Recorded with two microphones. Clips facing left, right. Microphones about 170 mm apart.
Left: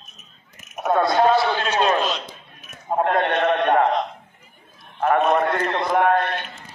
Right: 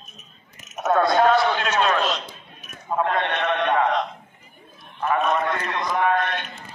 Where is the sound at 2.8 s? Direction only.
45° left (ahead or behind).